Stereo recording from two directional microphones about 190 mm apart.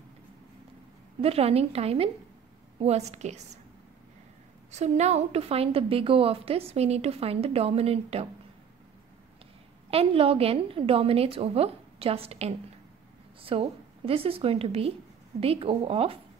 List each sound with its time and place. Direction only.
1.2 s a woman's voice: 30° right (ahead or behind)
4.6 s a woman's voice: 35° right (ahead or behind)
9.8 s a woman's voice: 30° right (ahead or behind)